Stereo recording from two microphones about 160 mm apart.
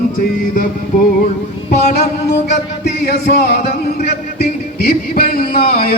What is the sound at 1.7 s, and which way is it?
Music, 45° left (ahead or behind).